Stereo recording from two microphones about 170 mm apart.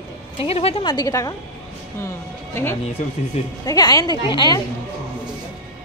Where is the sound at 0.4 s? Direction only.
35° left (ahead or behind).